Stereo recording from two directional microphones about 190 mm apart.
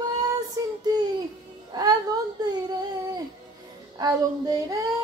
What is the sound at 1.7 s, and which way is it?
Music, 20° right (ahead or behind).